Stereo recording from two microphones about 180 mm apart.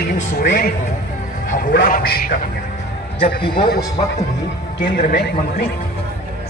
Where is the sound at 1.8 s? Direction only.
50° left (ahead or behind).